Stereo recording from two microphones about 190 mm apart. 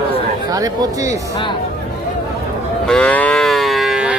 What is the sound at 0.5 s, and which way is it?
Speech, 15° right (ahead or behind).